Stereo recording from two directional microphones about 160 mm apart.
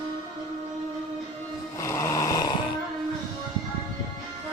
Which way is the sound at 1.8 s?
15° left (ahead or behind).